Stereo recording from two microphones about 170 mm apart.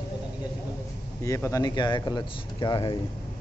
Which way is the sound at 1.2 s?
20° left (ahead or behind).